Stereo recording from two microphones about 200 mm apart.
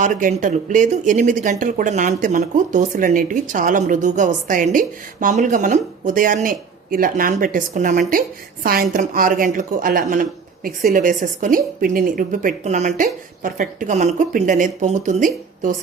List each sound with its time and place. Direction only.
0.0 s speech: 40° right (ahead or behind)